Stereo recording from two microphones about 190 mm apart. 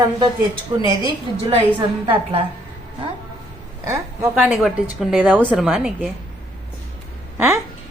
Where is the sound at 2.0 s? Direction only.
30° right (ahead or behind).